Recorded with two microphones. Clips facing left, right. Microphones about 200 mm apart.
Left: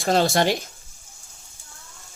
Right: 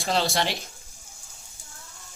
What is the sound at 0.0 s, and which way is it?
Speech, 45° left (ahead or behind).